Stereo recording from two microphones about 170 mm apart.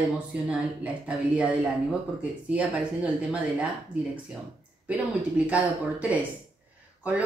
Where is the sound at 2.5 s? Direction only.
10° right (ahead or behind).